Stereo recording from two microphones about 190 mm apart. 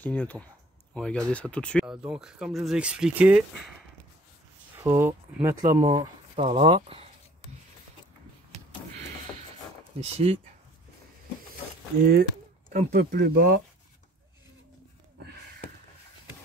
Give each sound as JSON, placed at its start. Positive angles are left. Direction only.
{"t": 0.0, "sound": "speech", "side_deg": 10}
{"t": 4.7, "sound": "speech", "side_deg": -15}
{"t": 5.6, "sound": "speech", "side_deg": -40}
{"t": 5.9, "sound": "speech", "side_deg": -30}
{"t": 9.9, "sound": "speech", "side_deg": -35}
{"t": 12.0, "sound": "speech", "side_deg": -55}